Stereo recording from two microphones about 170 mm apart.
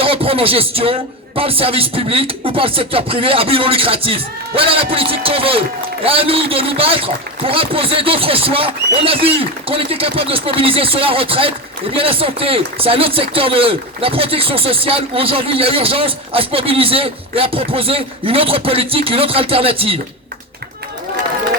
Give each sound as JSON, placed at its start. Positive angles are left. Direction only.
{"t": 0.0, "sound": "music", "side_deg": -35}
{"t": 1.4, "sound": "speech", "side_deg": -35}